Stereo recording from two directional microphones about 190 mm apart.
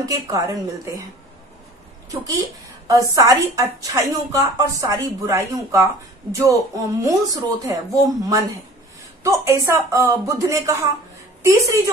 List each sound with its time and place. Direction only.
0.0 s speech: 20° right (ahead or behind)
2.0 s a woman's voice: 20° right (ahead or behind)